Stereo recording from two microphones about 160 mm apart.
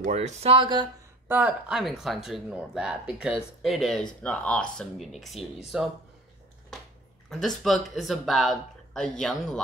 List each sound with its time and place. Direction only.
0.0 s speech: 45° right (ahead or behind); by 0.8 s 30° right (ahead or behind)
1.3 s speech: 5° right (ahead or behind)
6.7 s a sound: 5° left (ahead or behind)
7.2 s speech: centre (ahead or behind)